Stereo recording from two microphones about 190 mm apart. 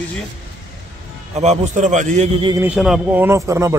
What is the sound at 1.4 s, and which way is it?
A man's voice, 40° right (ahead or behind).